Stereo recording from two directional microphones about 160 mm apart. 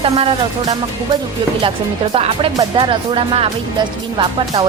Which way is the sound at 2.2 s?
35° right (ahead or behind).